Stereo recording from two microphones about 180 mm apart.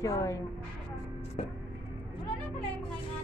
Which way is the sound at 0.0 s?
20° left (ahead or behind).